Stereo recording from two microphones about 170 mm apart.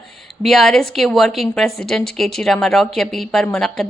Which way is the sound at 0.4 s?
Centre (ahead or behind).